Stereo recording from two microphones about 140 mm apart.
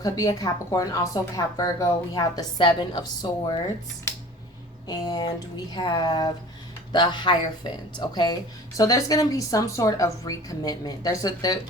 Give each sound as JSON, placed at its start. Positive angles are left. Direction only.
{"t": 0.0, "sound": "speech", "side_deg": 25}
{"t": 4.9, "sound": "speech", "side_deg": 30}